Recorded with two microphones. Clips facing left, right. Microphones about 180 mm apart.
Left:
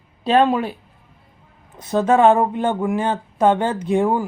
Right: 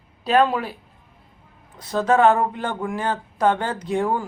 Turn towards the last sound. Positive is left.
turn(degrees=20)  # may be behind; listen again after turning